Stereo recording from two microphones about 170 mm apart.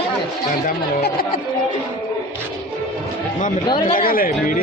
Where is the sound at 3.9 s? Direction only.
55° left (ahead or behind).